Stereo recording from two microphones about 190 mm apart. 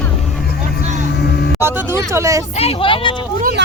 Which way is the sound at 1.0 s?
60° left (ahead or behind).